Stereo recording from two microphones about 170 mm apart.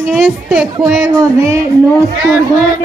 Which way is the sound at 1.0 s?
15° right (ahead or behind).